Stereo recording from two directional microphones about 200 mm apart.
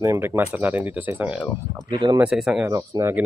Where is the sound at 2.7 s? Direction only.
15° right (ahead or behind).